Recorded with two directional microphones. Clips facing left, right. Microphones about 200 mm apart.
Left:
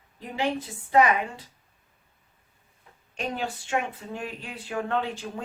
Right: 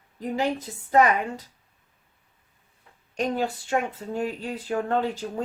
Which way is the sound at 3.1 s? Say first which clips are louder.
Right 5 dB; 40° right (ahead or behind).